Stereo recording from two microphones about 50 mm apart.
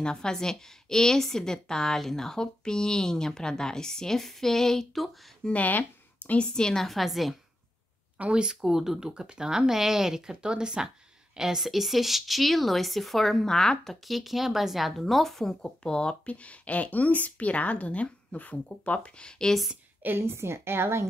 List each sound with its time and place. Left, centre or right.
0.0 s a woman's voice: centre
5.5 s speech: left
6.4 s speech: centre
8.2 s speech: centre
8.6 s a woman's voice: centre
14.0 s speech: centre
15.8 s speech: centre
20.2 s a woman's voice: right